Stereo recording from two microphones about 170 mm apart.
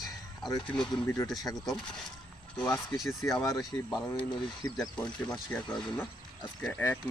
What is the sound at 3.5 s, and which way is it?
Speech, 25° left (ahead or behind).